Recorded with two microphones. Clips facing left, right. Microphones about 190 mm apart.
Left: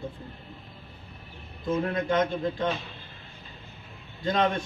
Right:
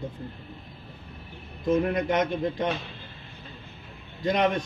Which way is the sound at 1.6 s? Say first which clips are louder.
Right 3 dB; 20° right (ahead or behind).